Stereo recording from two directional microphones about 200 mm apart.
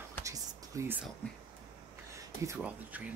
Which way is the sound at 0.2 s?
15° right (ahead or behind).